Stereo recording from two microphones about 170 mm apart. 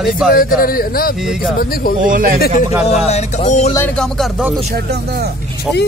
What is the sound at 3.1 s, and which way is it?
Music, 40° left (ahead or behind).